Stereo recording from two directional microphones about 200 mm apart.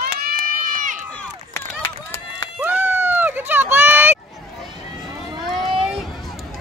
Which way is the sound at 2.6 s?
10° right (ahead or behind).